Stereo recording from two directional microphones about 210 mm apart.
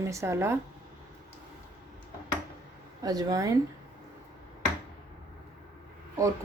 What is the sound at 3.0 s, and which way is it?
Speech, 20° right (ahead or behind).